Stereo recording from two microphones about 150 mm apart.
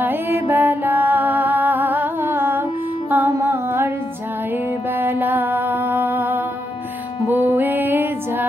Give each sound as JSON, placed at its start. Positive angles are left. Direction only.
{"t": 0.0, "sound": "music", "side_deg": -15}
{"t": 4.9, "sound": "music", "side_deg": -15}